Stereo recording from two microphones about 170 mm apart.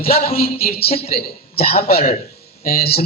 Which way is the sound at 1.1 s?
60° left (ahead or behind).